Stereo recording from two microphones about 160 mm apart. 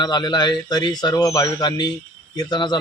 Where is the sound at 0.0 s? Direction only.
25° left (ahead or behind).